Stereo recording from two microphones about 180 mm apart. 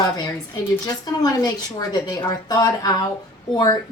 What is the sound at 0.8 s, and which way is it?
A woman's voice, 20° left (ahead or behind).